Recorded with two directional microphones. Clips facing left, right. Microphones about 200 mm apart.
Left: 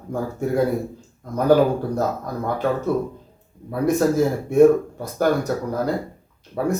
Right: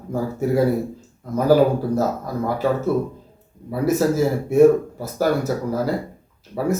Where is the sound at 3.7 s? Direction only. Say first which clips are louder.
Even; 5° right (ahead or behind).